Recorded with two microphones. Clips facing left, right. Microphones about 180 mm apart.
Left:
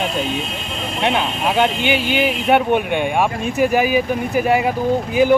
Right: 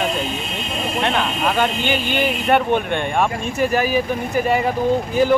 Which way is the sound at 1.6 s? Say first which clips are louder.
Left 6 dB; 15° left (ahead or behind).